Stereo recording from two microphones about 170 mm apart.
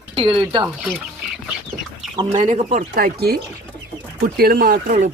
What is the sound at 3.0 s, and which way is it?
Speech, 65° right (ahead or behind).